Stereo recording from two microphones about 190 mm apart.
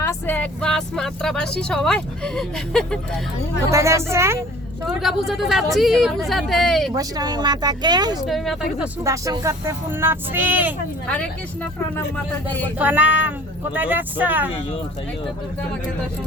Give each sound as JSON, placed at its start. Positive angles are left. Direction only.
{"t": 0.0, "sound": "speech", "side_deg": 10}
{"t": 3.7, "sound": "speech", "side_deg": -15}
{"t": 4.9, "sound": "speech", "side_deg": 0}
{"t": 6.9, "sound": "speech", "side_deg": -20}
{"t": 8.3, "sound": "speech", "side_deg": 0}
{"t": 9.0, "sound": "speech", "side_deg": -15}
{"t": 11.9, "sound": "speech", "side_deg": 10}
{"t": 12.8, "sound": "speech", "side_deg": -10}